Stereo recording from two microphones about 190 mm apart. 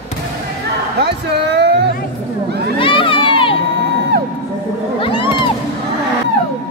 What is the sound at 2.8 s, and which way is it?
Crowd, 25° left (ahead or behind).